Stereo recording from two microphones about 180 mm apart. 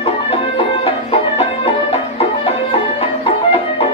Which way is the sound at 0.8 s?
30° left (ahead or behind).